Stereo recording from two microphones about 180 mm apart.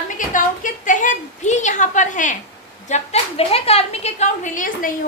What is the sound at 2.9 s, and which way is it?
A woman's voice, 40° left (ahead or behind).